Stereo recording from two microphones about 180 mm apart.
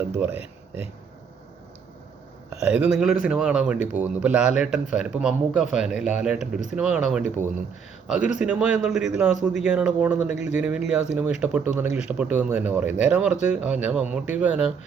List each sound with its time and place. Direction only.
0.0 s speech: 10° right (ahead or behind)
2.6 s a man's voice: 5° right (ahead or behind)
10.3 s speech: 40° left (ahead or behind)
10.6 s speech: 5° right (ahead or behind)